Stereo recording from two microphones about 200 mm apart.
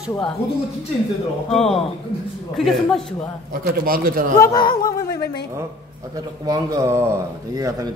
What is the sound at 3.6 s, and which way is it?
Speech, 45° right (ahead or behind).